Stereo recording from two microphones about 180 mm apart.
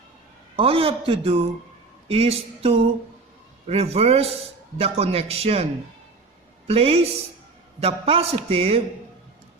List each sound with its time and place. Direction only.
0.5 s a man's voice: 30° right (ahead or behind)
6.7 s a man's voice: 35° right (ahead or behind)